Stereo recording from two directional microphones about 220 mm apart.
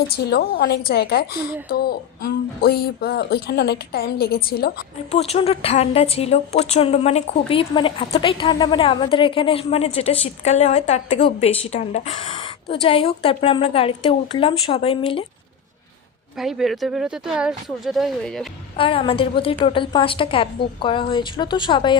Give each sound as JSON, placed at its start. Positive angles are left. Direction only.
{"t": 0.3, "sound": "speech", "side_deg": 45}
{"t": 5.1, "sound": "a woman's voice", "side_deg": 30}
{"t": 16.4, "sound": "speech", "side_deg": 0}
{"t": 18.8, "sound": "a woman's voice", "side_deg": 25}